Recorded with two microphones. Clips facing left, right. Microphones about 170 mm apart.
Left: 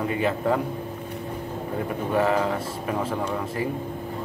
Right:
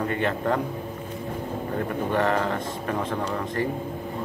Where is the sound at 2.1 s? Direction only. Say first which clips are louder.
Left 2 dB; 5° left (ahead or behind).